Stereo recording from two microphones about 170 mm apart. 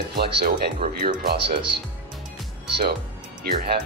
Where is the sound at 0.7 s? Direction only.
60° right (ahead or behind).